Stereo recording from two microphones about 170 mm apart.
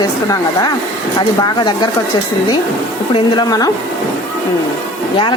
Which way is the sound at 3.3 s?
20° left (ahead or behind).